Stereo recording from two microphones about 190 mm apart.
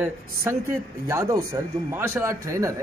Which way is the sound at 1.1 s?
15° right (ahead or behind).